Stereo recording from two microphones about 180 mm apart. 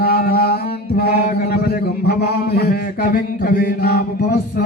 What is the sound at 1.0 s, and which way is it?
Mantra, 60° left (ahead or behind).